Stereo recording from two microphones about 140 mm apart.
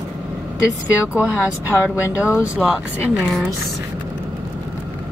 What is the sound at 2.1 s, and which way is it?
Speech, 10° right (ahead or behind).